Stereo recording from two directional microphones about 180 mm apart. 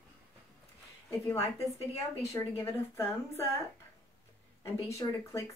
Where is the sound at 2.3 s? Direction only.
15° left (ahead or behind).